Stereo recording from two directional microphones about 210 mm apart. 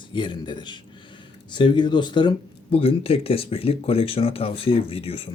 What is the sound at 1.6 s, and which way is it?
Speech, 20° left (ahead or behind).